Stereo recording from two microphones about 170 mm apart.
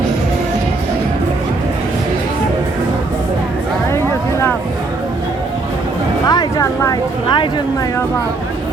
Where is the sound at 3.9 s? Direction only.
15° left (ahead or behind).